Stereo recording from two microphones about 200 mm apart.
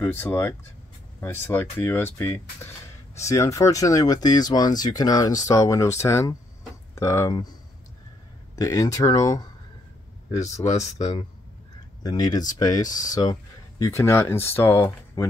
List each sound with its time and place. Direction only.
0.0 s speech: 10° left (ahead or behind)
8.5 s speech: 15° left (ahead or behind)
10.5 s speech: 15° left (ahead or behind)